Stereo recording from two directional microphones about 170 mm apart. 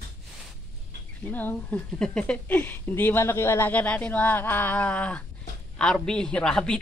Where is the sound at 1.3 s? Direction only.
10° left (ahead or behind).